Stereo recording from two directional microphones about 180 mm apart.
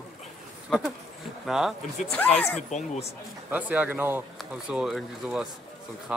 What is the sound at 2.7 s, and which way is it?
Speech, 40° left (ahead or behind).